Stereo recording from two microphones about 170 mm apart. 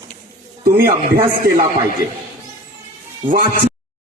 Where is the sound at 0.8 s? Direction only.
55° right (ahead or behind).